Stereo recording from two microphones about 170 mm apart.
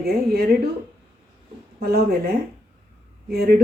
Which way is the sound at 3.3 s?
65° right (ahead or behind).